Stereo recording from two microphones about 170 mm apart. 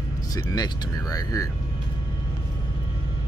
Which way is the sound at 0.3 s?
20° left (ahead or behind).